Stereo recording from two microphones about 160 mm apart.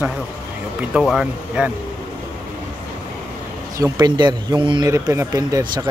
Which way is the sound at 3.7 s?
25° right (ahead or behind).